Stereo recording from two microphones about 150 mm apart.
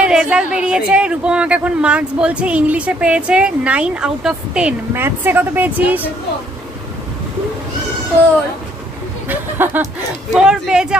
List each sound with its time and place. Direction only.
0.0 s a woman's voice: 5° right (ahead or behind)
9.6 s a woman's voice: 15° right (ahead or behind)